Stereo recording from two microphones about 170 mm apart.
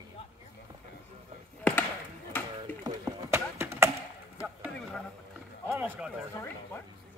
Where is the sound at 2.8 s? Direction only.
20° right (ahead or behind).